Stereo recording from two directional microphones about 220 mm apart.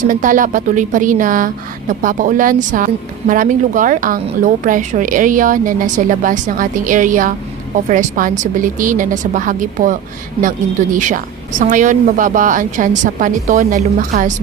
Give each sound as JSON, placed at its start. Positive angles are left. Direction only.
{"t": 0.0, "sound": "a woman's voice", "side_deg": -35}